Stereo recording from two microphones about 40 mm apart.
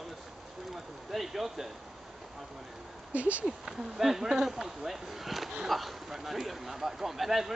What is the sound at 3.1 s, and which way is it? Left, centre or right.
Speech, right.